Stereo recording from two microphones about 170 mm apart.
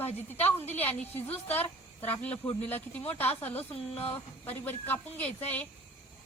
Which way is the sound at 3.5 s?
35° left (ahead or behind).